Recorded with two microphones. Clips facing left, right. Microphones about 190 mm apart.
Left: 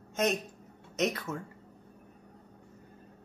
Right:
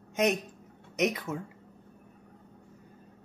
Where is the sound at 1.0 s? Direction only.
15° right (ahead or behind).